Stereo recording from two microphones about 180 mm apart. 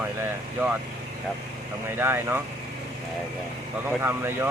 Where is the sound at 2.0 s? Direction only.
10° right (ahead or behind).